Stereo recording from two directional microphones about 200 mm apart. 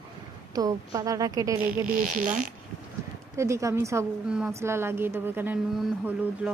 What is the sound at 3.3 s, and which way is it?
A woman's voice, 15° right (ahead or behind).